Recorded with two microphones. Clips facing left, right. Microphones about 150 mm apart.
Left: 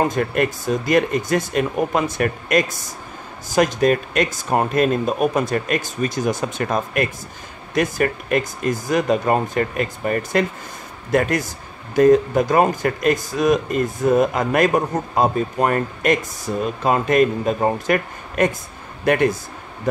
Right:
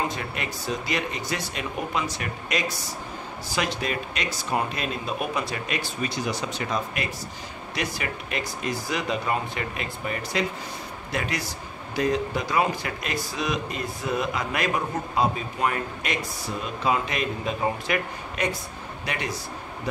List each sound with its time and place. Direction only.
0.0 s a man's voice: 50° left (ahead or behind)